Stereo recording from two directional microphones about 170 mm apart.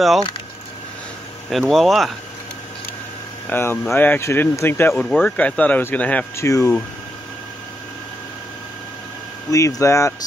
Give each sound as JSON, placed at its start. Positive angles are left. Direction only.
{"t": 1.5, "sound": "speech", "side_deg": 0}
{"t": 3.4, "sound": "speech", "side_deg": 10}
{"t": 9.5, "sound": "speech", "side_deg": 20}